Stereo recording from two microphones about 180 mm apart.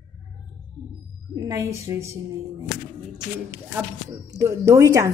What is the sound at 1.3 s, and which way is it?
Speech, 15° right (ahead or behind).